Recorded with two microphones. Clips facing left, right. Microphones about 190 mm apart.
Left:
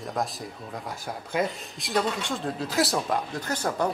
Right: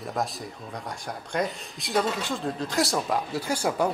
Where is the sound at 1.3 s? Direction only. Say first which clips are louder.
Left 1 dB; centre (ahead or behind).